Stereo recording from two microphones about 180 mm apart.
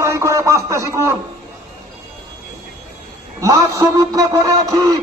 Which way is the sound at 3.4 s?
20° right (ahead or behind).